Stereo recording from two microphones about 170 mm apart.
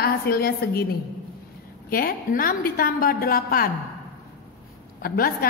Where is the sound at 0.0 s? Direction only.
65° left (ahead or behind).